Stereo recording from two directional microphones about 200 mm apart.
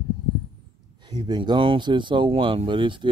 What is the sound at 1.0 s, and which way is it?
Speech, 20° right (ahead or behind).